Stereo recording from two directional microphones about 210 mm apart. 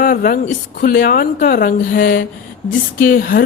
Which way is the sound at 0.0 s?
40° left (ahead or behind).